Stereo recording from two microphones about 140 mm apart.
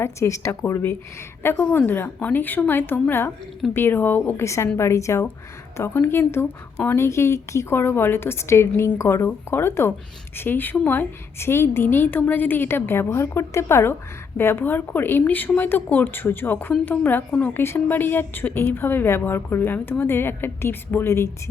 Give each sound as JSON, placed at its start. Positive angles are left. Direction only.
{"t": 0.0, "sound": "a woman's voice", "side_deg": 20}